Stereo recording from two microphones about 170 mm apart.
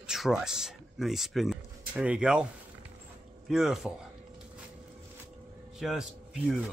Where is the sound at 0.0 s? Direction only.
5° right (ahead or behind).